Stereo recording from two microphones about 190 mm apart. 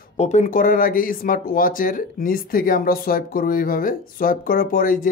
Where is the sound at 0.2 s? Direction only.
40° left (ahead or behind).